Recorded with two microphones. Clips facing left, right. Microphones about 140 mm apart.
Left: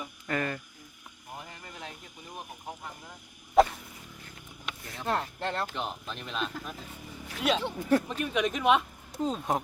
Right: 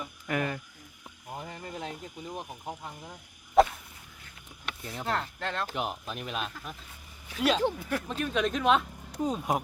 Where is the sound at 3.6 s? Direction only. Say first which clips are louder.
Even; centre (ahead or behind).